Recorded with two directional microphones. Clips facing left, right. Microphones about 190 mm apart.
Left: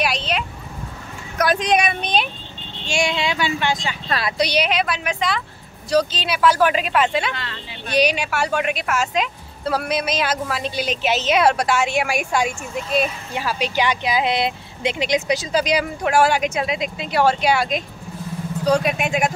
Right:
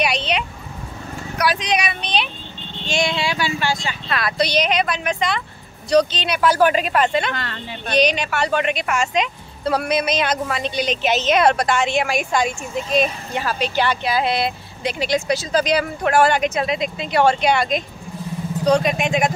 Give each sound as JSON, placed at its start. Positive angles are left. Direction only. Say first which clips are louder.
{"t": 0.0, "sound": "a sound", "louder": "right 1 dB", "side_deg": 0}
{"t": 1.4, "sound": "speech", "louder": "left 3 dB", "side_deg": 50}
{"t": 2.9, "sound": "speech", "louder": "even", "side_deg": 10}
{"t": 7.3, "sound": "speech", "louder": "right 4 dB", "side_deg": -45}
{"t": 7.9, "sound": "speech", "louder": "right 1 dB", "side_deg": 10}